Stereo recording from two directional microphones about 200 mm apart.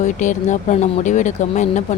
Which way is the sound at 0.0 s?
35° left (ahead or behind).